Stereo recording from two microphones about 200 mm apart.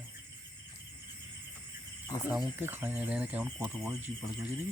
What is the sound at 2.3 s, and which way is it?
Speech, 5° right (ahead or behind).